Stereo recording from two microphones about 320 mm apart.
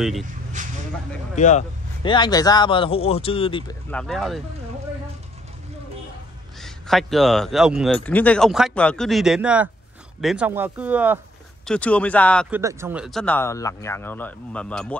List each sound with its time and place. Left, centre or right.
0.6 s a sound: right
1.3 s speech: left
3.9 s speech: centre
6.6 s speech: centre